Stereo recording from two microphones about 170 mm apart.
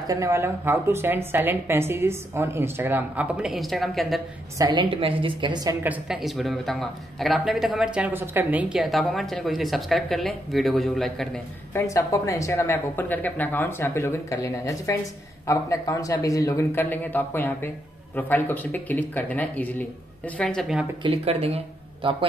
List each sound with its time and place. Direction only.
0.0 s a woman's voice: 20° right (ahead or behind); by 4.2 s centre (ahead or behind)
4.6 s a woman's voice: 25° right (ahead or behind)
5.9 s speech: 5° right (ahead or behind)
11.7 s speech: 20° left (ahead or behind); by 20.8 s centre (ahead or behind)
21.0 s speech: 35° right (ahead or behind)